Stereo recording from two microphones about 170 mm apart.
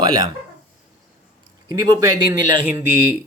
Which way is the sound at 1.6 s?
20° right (ahead or behind).